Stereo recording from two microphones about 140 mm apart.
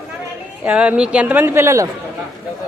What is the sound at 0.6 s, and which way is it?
A man's voice, 10° right (ahead or behind).